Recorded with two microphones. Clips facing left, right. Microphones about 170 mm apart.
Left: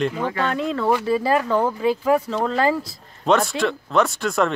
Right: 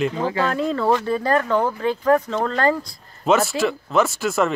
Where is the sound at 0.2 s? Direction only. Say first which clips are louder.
Right 2 dB; 30° right (ahead or behind).